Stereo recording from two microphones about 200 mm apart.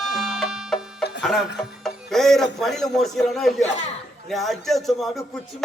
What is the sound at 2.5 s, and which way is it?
A man's voice, centre (ahead or behind).